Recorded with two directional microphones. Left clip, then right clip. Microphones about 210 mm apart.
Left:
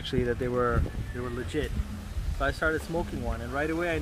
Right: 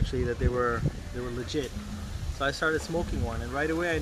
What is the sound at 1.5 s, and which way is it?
Speech, centre (ahead or behind).